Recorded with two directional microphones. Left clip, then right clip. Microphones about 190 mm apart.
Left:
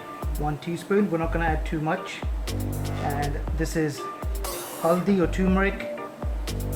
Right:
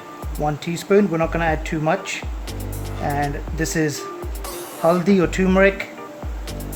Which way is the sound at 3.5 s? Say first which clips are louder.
Right 5 dB; 45° right (ahead or behind).